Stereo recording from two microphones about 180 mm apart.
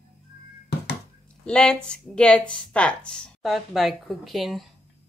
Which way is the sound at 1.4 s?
5° left (ahead or behind).